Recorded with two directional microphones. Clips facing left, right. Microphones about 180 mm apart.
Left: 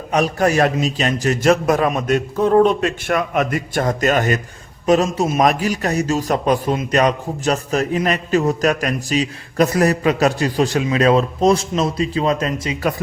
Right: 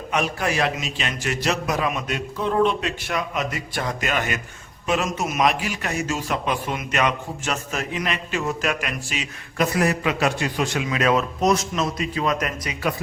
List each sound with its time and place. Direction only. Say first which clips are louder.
0.1 s a man's voice: left 7 dB; 40° left (ahead or behind)
5.4 s a man's voice: left 4 dB; 45° left (ahead or behind); by 12.7 s 30° left (ahead or behind)